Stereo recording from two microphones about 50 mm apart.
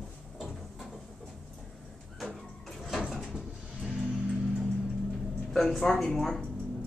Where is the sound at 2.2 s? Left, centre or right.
Centre.